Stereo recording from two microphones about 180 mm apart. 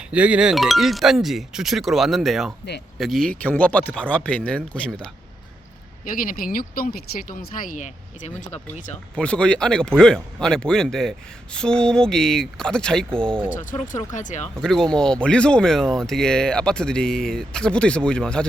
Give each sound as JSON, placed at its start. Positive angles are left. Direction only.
{"t": 0.1, "sound": "speech", "side_deg": -5}
{"t": 6.1, "sound": "speech", "side_deg": 50}
{"t": 9.1, "sound": "speech", "side_deg": 5}
{"t": 13.6, "sound": "speech", "side_deg": 45}
{"t": 14.4, "sound": "speech", "side_deg": 5}